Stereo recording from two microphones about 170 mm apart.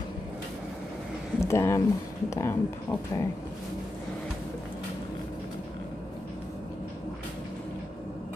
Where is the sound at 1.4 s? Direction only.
15° left (ahead or behind).